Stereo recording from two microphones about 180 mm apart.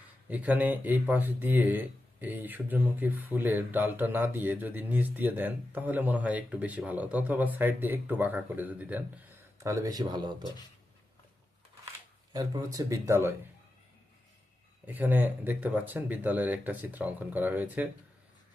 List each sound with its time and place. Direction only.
0.3 s speech: 10° right (ahead or behind)
12.3 s speech: 20° right (ahead or behind)
14.8 s speech: 10° right (ahead or behind)